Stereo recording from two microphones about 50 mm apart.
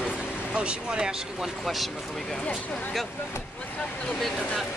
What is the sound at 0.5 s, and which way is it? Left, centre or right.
Speech, centre.